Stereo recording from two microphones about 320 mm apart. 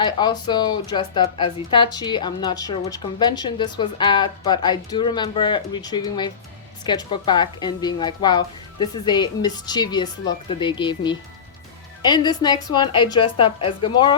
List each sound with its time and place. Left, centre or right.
0.0 s speech: centre